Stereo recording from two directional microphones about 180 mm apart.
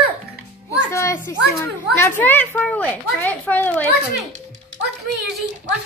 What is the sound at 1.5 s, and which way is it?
A child's voice, 15° left (ahead or behind).